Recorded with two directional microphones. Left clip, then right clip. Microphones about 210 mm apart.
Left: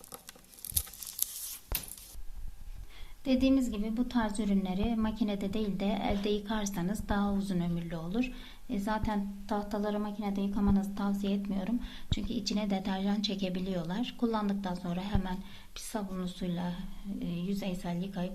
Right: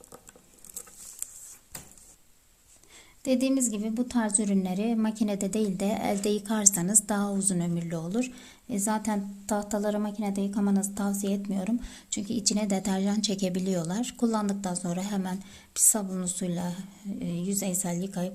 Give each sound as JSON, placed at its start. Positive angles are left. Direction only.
{"t": 3.2, "sound": "a woman's voice", "side_deg": -50}